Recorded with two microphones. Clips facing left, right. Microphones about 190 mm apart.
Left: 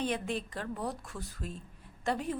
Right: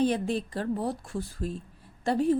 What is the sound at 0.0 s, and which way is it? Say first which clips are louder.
Speech: right 7 dB; 35° right (ahead or behind).